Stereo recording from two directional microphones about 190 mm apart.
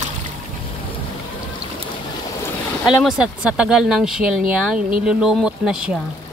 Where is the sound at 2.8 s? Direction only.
5° right (ahead or behind).